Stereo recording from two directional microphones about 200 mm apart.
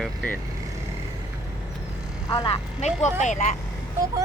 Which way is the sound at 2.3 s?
25° left (ahead or behind).